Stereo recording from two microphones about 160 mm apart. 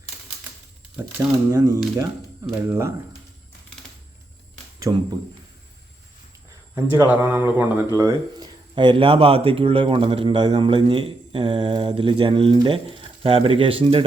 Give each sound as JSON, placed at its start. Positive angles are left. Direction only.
{"t": 1.5, "sound": "speech", "side_deg": -20}
{"t": 4.9, "sound": "speech", "side_deg": -20}
{"t": 6.7, "sound": "speech", "side_deg": -10}
{"t": 7.9, "sound": "speech", "side_deg": -25}